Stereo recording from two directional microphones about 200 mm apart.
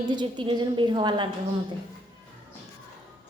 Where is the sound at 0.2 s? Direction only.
20° right (ahead or behind).